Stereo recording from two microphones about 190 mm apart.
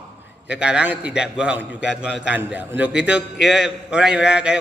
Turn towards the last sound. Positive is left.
turn(degrees=-5)  # may be behind; listen again after turning